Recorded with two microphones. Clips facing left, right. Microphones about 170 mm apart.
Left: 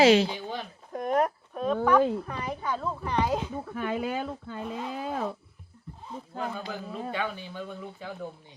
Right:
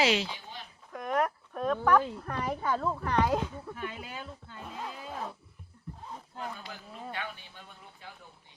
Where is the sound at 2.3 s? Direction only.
15° left (ahead or behind).